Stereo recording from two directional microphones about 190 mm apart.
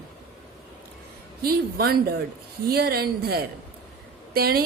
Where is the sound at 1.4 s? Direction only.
55° right (ahead or behind).